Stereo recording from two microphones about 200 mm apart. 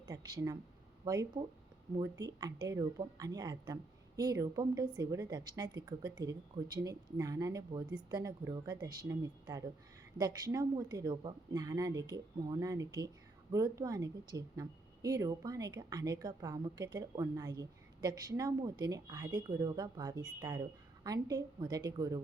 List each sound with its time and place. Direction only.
0.1 s speech: 20° right (ahead or behind)